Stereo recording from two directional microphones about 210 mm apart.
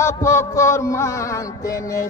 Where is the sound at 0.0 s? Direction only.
15° left (ahead or behind).